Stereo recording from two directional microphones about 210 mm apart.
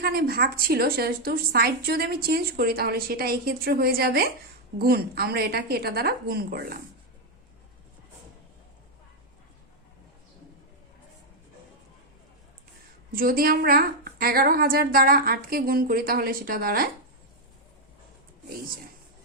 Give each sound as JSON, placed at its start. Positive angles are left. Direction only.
{"t": 0.0, "sound": "a woman's voice", "side_deg": -45}
{"t": 13.1, "sound": "a woman's voice", "side_deg": -45}